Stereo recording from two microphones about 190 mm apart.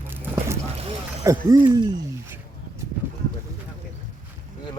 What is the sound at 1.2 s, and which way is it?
Speech, 15° right (ahead or behind).